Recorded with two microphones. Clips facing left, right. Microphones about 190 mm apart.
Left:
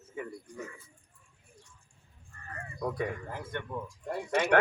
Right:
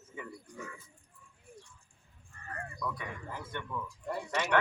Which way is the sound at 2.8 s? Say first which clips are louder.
Left 8 dB; 40° left (ahead or behind).